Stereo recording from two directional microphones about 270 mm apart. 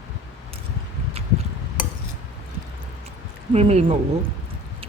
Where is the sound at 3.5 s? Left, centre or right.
Right.